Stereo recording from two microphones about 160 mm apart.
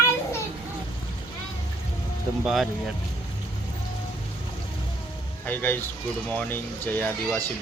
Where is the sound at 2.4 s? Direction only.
5° right (ahead or behind).